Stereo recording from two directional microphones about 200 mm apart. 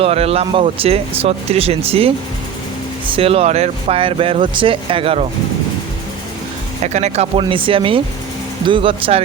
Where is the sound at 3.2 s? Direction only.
30° right (ahead or behind).